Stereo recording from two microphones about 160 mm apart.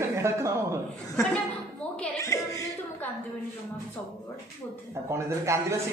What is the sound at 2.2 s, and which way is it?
Chuckle, 20° left (ahead or behind).